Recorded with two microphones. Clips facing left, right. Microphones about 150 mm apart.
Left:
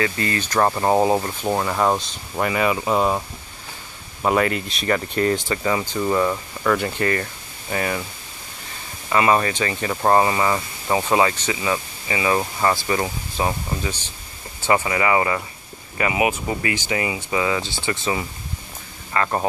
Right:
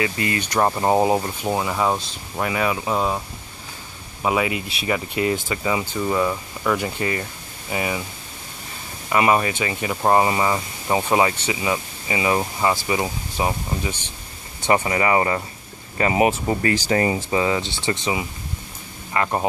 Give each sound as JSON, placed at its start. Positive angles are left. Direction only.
{"t": 0.0, "sound": "speech", "side_deg": -20}
{"t": 4.2, "sound": "speech", "side_deg": -5}
{"t": 5.9, "sound": "speech", "side_deg": 0}
{"t": 9.1, "sound": "speech", "side_deg": -15}
{"t": 12.4, "sound": "speech", "side_deg": -10}
{"t": 14.7, "sound": "speech", "side_deg": -30}
{"t": 17.4, "sound": "speech", "side_deg": -25}
{"t": 19.1, "sound": "speech", "side_deg": -15}